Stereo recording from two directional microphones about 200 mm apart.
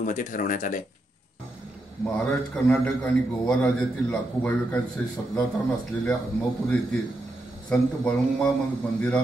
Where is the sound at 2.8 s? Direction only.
5° left (ahead or behind).